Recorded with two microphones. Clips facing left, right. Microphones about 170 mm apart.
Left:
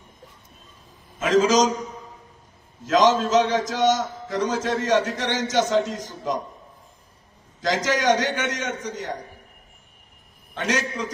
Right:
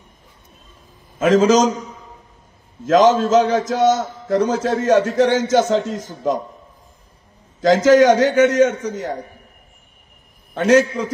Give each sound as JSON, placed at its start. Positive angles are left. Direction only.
{"t": 1.2, "sound": "a man's voice", "side_deg": -55}
{"t": 2.9, "sound": "a man's voice", "side_deg": -45}
{"t": 7.6, "sound": "a man's voice", "side_deg": -55}
{"t": 10.5, "sound": "a man's voice", "side_deg": -50}